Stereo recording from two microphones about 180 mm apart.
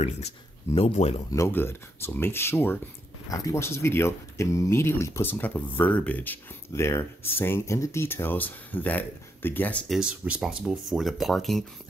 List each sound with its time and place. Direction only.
0.7 s speech: 35° left (ahead or behind)
1.3 s speech: 15° left (ahead or behind)